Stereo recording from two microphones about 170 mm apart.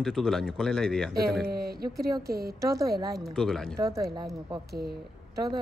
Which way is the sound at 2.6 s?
20° right (ahead or behind).